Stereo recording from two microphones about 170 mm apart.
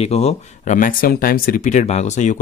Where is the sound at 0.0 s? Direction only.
40° left (ahead or behind).